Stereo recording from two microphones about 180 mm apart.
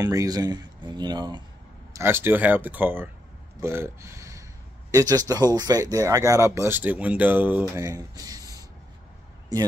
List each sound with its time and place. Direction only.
0.0 s speech: 20° right (ahead or behind)
2.0 s speech: 15° right (ahead or behind)
9.5 s speech: 20° right (ahead or behind)